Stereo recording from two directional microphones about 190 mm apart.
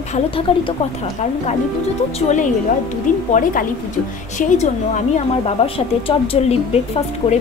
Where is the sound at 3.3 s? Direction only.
45° left (ahead or behind); by 6.5 s 30° left (ahead or behind).